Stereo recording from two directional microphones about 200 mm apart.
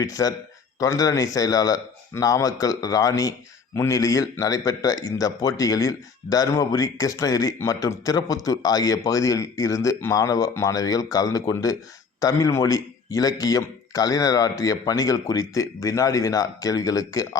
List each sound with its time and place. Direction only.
0.0 s speech: 15° left (ahead or behind)